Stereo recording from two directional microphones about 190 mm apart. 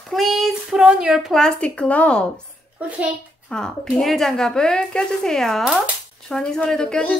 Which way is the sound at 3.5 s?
5° left (ahead or behind).